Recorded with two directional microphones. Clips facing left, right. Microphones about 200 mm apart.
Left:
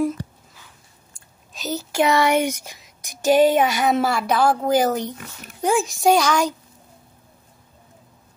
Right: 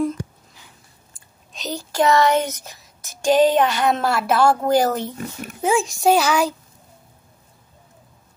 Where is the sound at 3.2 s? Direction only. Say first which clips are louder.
Even; 10° left (ahead or behind).